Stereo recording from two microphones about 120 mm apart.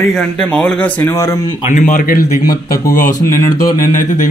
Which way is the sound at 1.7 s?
90° left.